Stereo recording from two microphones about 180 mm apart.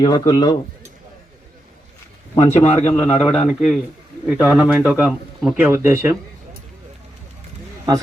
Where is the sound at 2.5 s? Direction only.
40° left (ahead or behind).